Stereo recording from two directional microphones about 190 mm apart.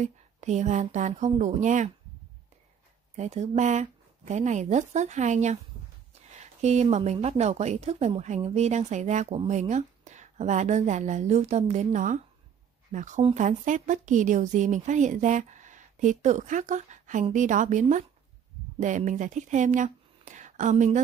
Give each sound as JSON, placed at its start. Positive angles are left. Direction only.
{"t": 0.0, "sound": "a woman's voice", "side_deg": -40}
{"t": 3.2, "sound": "a woman's voice", "side_deg": -35}